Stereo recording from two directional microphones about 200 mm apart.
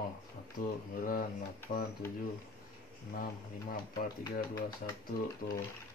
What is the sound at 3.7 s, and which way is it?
Speech, 45° left (ahead or behind).